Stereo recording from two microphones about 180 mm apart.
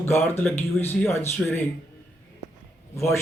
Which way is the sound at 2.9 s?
15° left (ahead or behind).